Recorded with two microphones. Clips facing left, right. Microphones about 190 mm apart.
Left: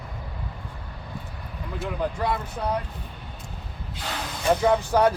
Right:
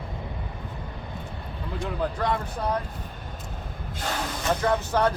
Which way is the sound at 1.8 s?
5° left (ahead or behind).